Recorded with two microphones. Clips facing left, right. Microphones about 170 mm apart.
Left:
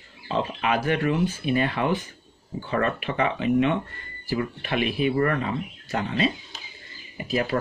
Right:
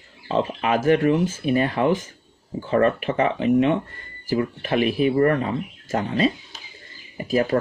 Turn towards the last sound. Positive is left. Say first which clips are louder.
# right 5 dB
turn(degrees=-40)  # may be behind; listen again after turning